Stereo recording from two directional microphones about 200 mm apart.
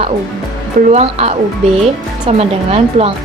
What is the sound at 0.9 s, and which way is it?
Speech, 30° right (ahead or behind).